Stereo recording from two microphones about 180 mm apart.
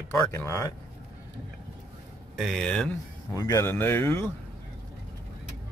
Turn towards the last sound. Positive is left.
turn(degrees=15)  # may be behind; listen again after turning